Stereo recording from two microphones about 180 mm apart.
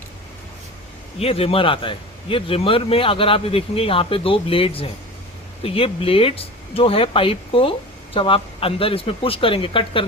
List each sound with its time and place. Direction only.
1.2 s speech: 35° left (ahead or behind)